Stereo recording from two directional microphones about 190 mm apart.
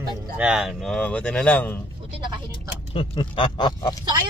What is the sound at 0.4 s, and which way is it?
Speech, 5° right (ahead or behind).